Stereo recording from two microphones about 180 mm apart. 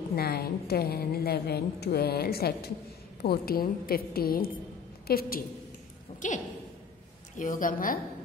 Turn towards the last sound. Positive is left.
turn(degrees=50)  # may be behind; listen again after turning